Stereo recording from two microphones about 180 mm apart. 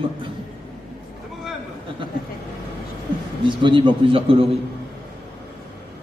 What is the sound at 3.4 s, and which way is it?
A man's voice, 25° right (ahead or behind).